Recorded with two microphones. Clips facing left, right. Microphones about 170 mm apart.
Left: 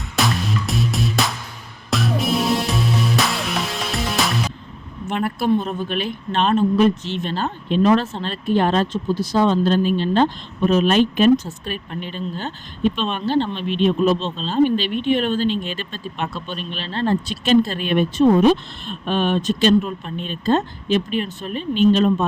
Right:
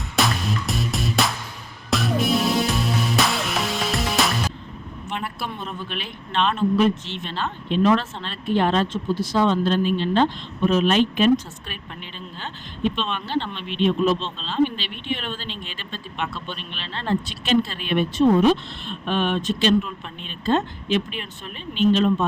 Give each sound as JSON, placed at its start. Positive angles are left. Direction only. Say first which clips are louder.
{"t": 0.2, "sound": "music", "louder": "left 2 dB", "side_deg": 0}
{"t": 5.0, "sound": "vehicle", "louder": "left 8 dB", "side_deg": 45}
{"t": 5.5, "sound": "a man's voice", "louder": "left 12 dB", "side_deg": 40}